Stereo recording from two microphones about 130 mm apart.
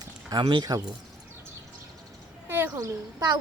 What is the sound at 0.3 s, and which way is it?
Speech, 35° right (ahead or behind).